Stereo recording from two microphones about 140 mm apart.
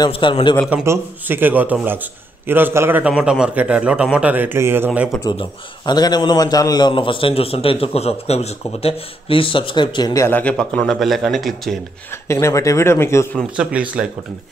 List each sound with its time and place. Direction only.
0.1 s a man's voice: 35° left (ahead or behind)
0.8 s a man's voice: 15° right (ahead or behind)
5.3 s a man's voice: 35° left (ahead or behind); by 11.8 s centre (ahead or behind)
12.3 s speech: 20° left (ahead or behind)
13.6 s a man's voice: 10° right (ahead or behind)